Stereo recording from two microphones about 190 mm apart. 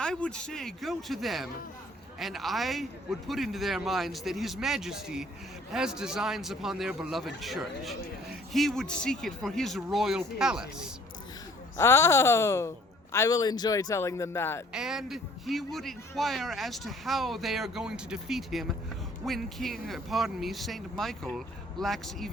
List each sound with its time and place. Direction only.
0.0 s a man's voice: 5° left (ahead or behind)
11.8 s speech: 15° left (ahead or behind)
14.7 s a man's voice: 5° right (ahead or behind)